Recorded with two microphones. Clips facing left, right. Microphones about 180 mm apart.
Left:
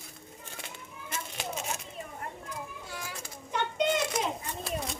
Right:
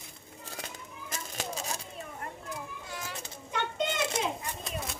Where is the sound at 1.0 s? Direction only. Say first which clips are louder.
Left 1 dB; 40° right (ahead or behind).